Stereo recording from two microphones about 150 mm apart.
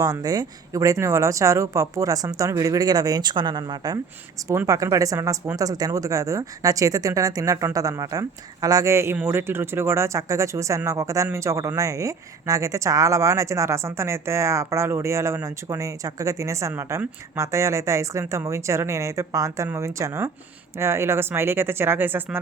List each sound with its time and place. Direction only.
0.0 s speech: 25° right (ahead or behind)